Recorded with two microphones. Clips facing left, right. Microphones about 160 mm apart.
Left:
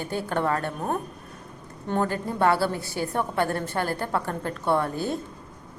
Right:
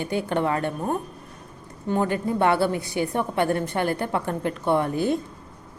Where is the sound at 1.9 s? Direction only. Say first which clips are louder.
Right 3 dB; 15° right (ahead or behind).